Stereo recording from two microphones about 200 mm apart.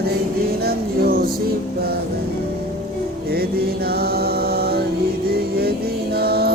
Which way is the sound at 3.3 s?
50° right (ahead or behind).